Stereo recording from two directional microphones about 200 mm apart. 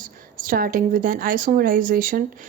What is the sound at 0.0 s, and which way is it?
A woman's voice, 45° right (ahead or behind).